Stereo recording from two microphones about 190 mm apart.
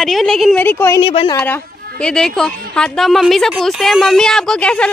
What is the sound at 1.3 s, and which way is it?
A woman's voice, 10° left (ahead or behind).